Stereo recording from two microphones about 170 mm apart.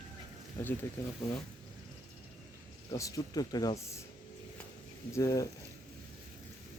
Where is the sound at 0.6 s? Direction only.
15° left (ahead or behind).